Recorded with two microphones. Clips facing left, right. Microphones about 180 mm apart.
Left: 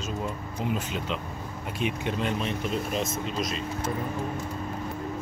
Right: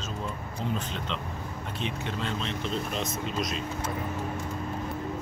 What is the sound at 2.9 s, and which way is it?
Speech, centre (ahead or behind).